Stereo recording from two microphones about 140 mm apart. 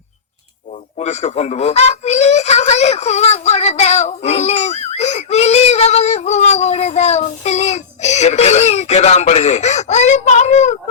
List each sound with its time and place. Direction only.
0.9 s speech: 50° left (ahead or behind)